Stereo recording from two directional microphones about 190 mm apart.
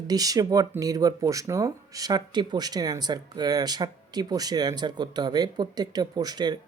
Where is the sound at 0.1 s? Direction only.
20° right (ahead or behind).